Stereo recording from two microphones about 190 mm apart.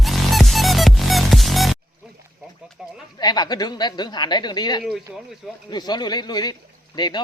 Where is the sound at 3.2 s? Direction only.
20° left (ahead or behind).